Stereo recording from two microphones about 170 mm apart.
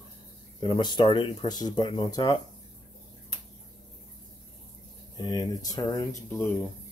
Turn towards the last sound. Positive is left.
turn(degrees=20)  # may be behind; listen again after turning